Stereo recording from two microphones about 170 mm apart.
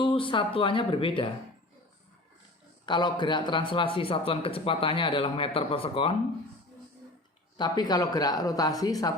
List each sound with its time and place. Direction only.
0.0 s a man's voice: 30° left (ahead or behind)
2.8 s a man's voice: 25° left (ahead or behind)
7.5 s speech: 25° left (ahead or behind)